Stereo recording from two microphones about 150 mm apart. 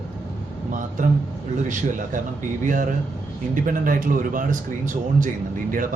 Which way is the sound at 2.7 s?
60° right (ahead or behind).